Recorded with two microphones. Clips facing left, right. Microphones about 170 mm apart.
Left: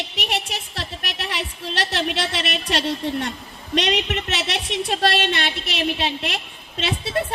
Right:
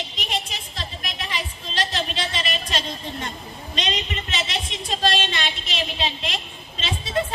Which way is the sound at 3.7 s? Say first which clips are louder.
Left 7 dB; 65° left (ahead or behind).